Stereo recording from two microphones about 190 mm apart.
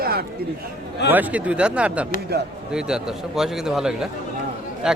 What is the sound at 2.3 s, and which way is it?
Speech, 55° right (ahead or behind).